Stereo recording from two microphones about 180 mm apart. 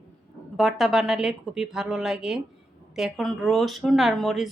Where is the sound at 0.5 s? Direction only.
Centre (ahead or behind).